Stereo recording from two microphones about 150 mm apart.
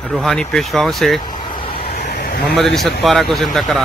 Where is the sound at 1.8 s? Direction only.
60° left (ahead or behind).